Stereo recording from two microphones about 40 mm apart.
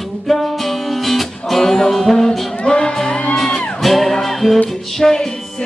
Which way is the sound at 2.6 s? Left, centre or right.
Left.